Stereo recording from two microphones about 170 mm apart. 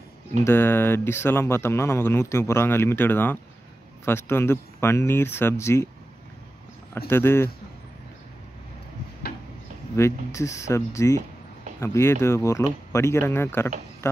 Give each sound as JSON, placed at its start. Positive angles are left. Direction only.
{"t": 0.4, "sound": "speech", "side_deg": 15}
{"t": 7.1, "sound": "speech", "side_deg": 15}
{"t": 9.9, "sound": "speech", "side_deg": 15}